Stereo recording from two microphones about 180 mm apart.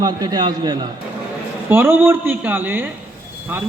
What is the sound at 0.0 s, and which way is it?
Speech, 20° right (ahead or behind).